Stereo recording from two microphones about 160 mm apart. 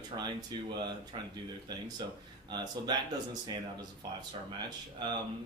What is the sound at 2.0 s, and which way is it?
Speech, 30° right (ahead or behind).